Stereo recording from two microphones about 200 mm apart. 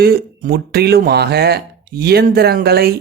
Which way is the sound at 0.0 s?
50° right (ahead or behind).